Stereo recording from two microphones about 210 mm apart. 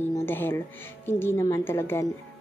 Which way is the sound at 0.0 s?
10° left (ahead or behind).